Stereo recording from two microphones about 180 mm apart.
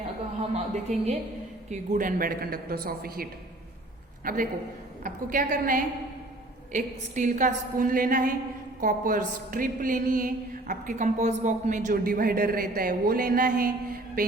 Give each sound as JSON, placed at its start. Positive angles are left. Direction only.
{"t": 0.5, "sound": "a woman's voice", "side_deg": -40}